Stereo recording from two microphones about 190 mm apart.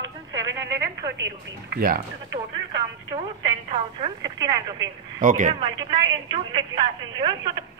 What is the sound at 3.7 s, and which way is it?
Speech, 30° right (ahead or behind).